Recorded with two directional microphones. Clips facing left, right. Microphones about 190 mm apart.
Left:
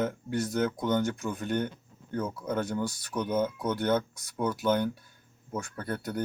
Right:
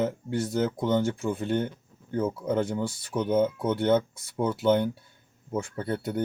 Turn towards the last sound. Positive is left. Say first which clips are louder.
# right 4 dB
turn(degrees=-25)  # may be behind; listen again after turning